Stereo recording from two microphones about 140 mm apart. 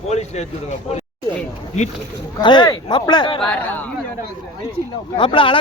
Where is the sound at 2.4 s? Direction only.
35° left (ahead or behind).